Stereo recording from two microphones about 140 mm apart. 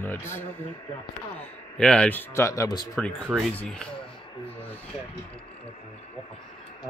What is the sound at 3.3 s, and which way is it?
Speech, 5° left (ahead or behind).